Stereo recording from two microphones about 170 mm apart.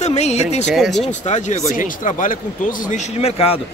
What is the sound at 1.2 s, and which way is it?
Speech, 45° left (ahead or behind).